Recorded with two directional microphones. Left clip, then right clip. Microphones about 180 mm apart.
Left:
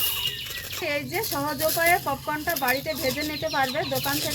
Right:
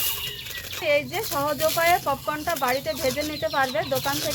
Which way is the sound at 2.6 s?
20° left (ahead or behind).